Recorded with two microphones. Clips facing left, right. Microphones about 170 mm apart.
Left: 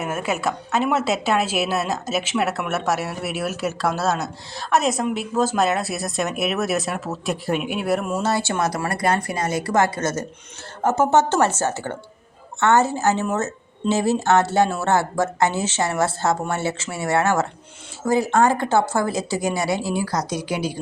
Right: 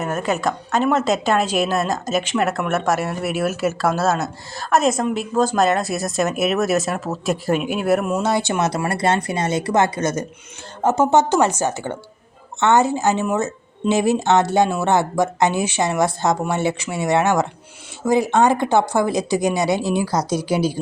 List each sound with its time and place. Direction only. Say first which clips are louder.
0.0 s a woman's voice: right 3 dB; 10° left (ahead or behind)
8.3 s speech: right 2 dB; 15° right (ahead or behind); by 20.7 s 35° right (ahead or behind)